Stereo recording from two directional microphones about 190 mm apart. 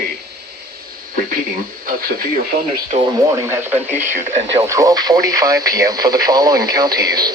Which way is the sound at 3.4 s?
15° right (ahead or behind).